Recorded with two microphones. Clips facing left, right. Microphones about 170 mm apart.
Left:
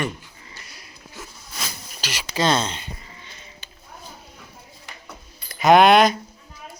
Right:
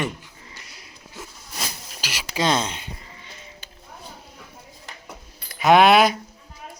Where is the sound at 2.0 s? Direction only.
10° right (ahead or behind).